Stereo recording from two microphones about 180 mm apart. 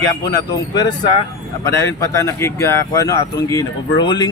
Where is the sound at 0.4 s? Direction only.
25° left (ahead or behind).